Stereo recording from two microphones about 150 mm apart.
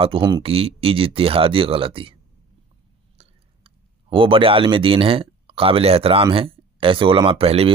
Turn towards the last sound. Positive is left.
turn(degrees=-40)  # may be behind; listen again after turning